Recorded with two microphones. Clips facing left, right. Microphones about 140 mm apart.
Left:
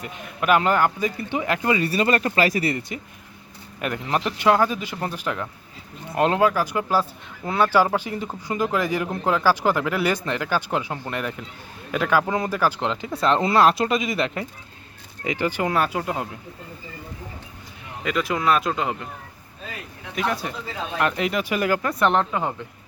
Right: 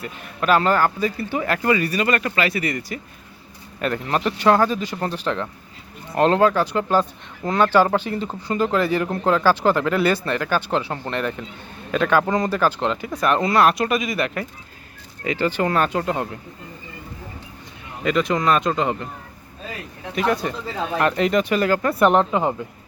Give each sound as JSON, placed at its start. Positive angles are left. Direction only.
{"t": 0.0, "sound": "speech", "side_deg": 15}
{"t": 3.8, "sound": "a man's voice", "side_deg": 15}
{"t": 18.0, "sound": "speech", "side_deg": 5}
{"t": 20.1, "sound": "speech", "side_deg": 0}
{"t": 21.8, "sound": "speech", "side_deg": -5}
{"t": 22.2, "sound": "speech", "side_deg": -20}